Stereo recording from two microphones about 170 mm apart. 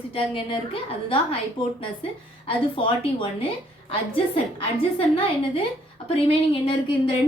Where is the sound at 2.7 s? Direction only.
30° left (ahead or behind).